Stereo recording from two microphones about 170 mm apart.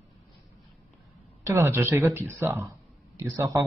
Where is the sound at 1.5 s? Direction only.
15° right (ahead or behind).